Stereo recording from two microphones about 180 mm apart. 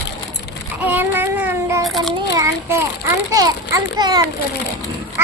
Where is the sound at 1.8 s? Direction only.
Centre (ahead or behind).